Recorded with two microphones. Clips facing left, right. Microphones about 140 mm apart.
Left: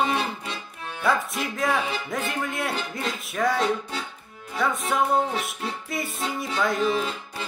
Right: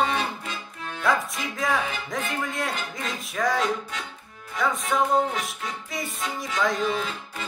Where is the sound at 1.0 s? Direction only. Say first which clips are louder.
Left 1 dB; centre (ahead or behind).